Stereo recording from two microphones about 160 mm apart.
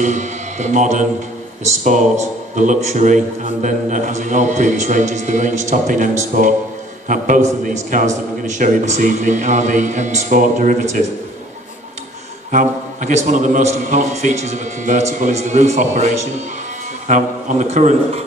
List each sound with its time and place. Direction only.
0.0 s a man's voice: 50° right (ahead or behind)
12.4 s a man's voice: 55° right (ahead or behind)
17.1 s a man's voice: 50° right (ahead or behind)